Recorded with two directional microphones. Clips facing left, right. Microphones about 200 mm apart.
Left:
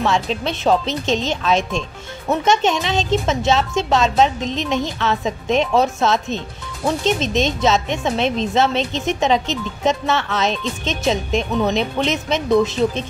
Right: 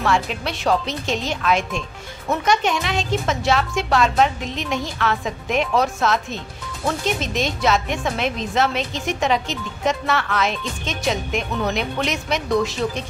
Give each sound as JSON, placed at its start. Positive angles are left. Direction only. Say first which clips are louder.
{"t": 0.0, "sound": "speech", "louder": "left 2 dB", "side_deg": 25}